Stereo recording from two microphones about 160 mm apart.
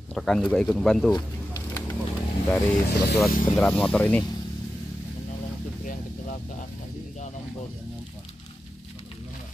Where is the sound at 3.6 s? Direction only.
5° left (ahead or behind).